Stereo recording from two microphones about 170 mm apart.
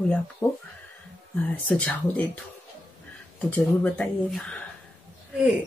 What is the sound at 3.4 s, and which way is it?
Speech, 10° left (ahead or behind).